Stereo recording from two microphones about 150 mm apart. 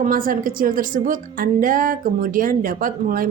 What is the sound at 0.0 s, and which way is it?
Speech, 70° right (ahead or behind).